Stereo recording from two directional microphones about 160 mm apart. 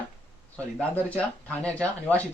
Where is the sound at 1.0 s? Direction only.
10° left (ahead or behind).